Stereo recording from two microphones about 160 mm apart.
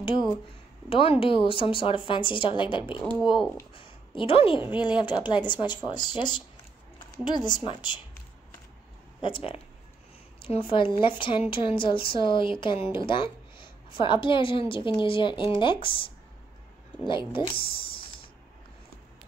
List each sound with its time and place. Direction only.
0.0 s speech: 30° left (ahead or behind)
3.0 s speech: 5° left (ahead or behind)
3.7 s a woman's voice: 35° left (ahead or behind)
9.2 s speech: 35° left (ahead or behind)